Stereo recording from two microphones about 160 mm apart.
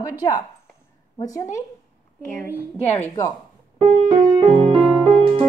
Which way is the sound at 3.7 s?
30° right (ahead or behind).